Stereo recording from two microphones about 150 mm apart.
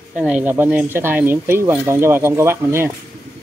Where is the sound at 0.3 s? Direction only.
10° right (ahead or behind).